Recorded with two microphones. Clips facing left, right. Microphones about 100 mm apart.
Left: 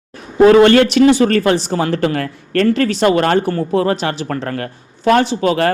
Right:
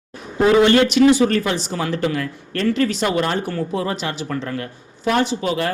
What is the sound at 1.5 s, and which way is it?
Speech, 50° left (ahead or behind).